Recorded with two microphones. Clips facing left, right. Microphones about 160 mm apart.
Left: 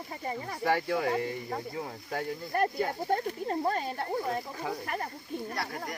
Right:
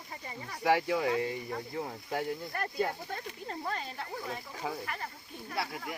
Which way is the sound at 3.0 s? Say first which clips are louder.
Left 10 dB; 55° left (ahead or behind).